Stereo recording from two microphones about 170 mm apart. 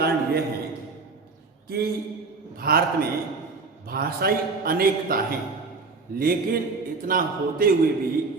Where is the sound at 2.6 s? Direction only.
60° right (ahead or behind).